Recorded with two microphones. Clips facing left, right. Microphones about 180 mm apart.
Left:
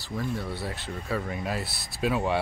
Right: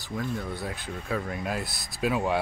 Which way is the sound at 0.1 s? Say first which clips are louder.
Even; 5° left (ahead or behind).